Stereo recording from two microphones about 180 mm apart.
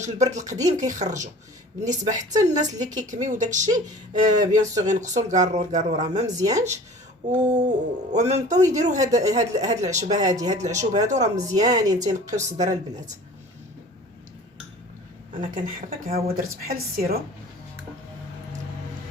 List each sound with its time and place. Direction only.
0.0 s speech: 40° right (ahead or behind)
3.7 s speech: 20° right (ahead or behind)
4.5 s speech: 45° right (ahead or behind)
6.2 s speech: 20° right (ahead or behind)
7.3 s speech: 40° right (ahead or behind)
10.2 s speech: 20° right (ahead or behind)
10.5 s speech: 40° right (ahead or behind)
11.3 s speech: 20° right (ahead or behind)
12.3 s speech: 40° right (ahead or behind)
15.3 s speech: 50° right (ahead or behind)